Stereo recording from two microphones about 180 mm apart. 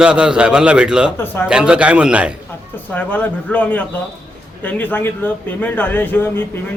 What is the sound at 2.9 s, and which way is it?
A man's voice, 10° left (ahead or behind).